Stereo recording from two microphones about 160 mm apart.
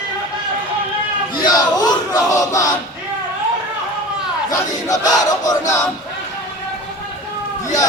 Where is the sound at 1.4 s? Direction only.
25° left (ahead or behind).